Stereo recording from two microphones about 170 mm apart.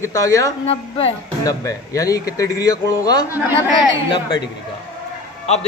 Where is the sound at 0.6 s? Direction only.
35° left (ahead or behind).